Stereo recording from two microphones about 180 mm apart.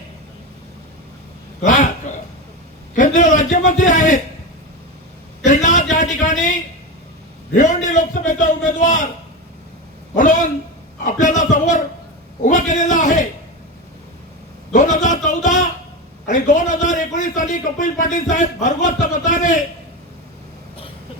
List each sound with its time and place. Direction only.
2.1 s cough: 40° left (ahead or behind)
2.9 s a man's voice: 45° left (ahead or behind)
5.5 s a man's voice: 45° left (ahead or behind)
10.2 s a man's voice: 45° left (ahead or behind)
14.7 s a sound: 45° left (ahead or behind)
16.3 s a man's voice: 45° left (ahead or behind)